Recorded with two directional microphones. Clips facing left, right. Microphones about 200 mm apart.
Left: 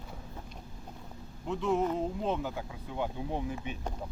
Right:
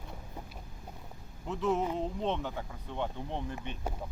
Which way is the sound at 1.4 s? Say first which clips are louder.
Left 1 dB; centre (ahead or behind).